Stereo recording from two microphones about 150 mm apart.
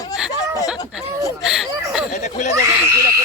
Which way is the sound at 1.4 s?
Centre (ahead or behind).